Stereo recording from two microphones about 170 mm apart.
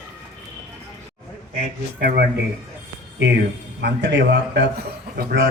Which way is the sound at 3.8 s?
85° right.